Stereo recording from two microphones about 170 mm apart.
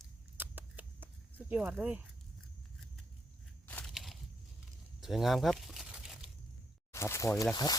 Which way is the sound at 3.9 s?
Centre (ahead or behind).